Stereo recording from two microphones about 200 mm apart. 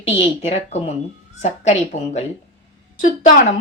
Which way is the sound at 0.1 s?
30° left (ahead or behind).